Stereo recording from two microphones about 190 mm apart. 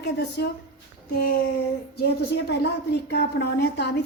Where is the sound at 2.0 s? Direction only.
60° left (ahead or behind).